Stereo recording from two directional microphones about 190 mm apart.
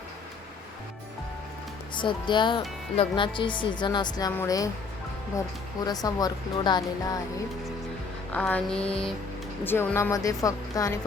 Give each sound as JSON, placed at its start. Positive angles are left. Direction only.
{"t": 2.0, "sound": "speech", "side_deg": 25}
{"t": 5.8, "sound": "speech", "side_deg": 20}
{"t": 8.3, "sound": "speech", "side_deg": 10}